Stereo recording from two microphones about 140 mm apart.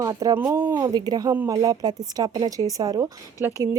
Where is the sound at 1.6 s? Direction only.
25° right (ahead or behind).